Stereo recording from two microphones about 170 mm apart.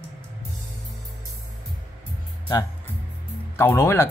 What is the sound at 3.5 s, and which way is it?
Speech, 15° left (ahead or behind).